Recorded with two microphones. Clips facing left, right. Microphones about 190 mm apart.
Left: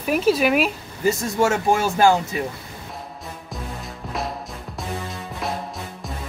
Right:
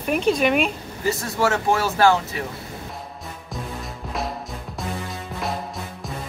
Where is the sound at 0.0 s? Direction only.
5° left (ahead or behind).